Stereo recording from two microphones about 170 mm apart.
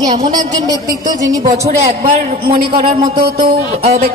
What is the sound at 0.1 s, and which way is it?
A woman's voice, 25° right (ahead or behind).